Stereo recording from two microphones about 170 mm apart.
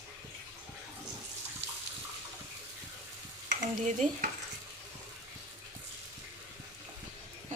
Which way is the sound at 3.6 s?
45° right (ahead or behind).